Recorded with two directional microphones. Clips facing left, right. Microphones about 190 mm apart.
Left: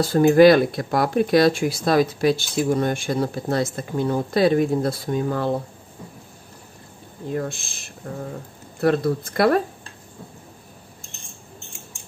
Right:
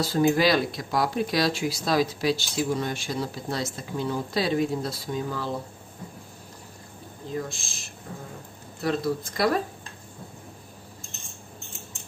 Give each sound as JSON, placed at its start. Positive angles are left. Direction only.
{"t": 0.0, "sound": "speech", "side_deg": 55}
{"t": 7.3, "sound": "speech", "side_deg": 60}